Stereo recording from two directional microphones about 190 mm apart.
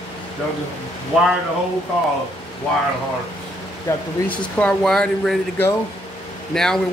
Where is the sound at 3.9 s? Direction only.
15° left (ahead or behind).